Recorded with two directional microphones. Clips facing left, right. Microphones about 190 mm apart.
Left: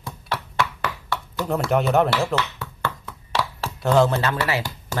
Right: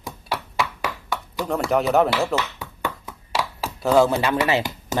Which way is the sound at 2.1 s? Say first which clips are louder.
Even; 15° right (ahead or behind).